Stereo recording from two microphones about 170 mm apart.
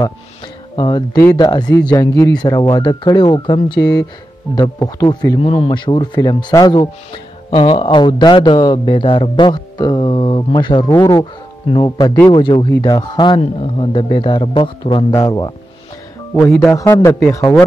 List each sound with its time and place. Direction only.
0.7 s speech: 25° left (ahead or behind)